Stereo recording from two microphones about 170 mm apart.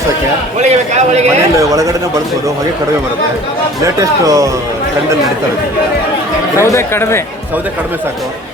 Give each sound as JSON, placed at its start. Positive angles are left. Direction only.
{"t": 0.6, "sound": "a man's voice", "side_deg": -40}
{"t": 1.5, "sound": "speech", "side_deg": -20}
{"t": 3.8, "sound": "speech", "side_deg": -20}
{"t": 6.6, "sound": "speech", "side_deg": 15}